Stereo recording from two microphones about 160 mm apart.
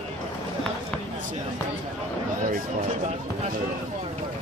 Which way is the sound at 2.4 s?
55° right (ahead or behind).